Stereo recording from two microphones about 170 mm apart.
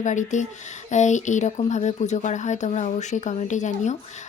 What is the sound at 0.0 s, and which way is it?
Speech, 45° left (ahead or behind).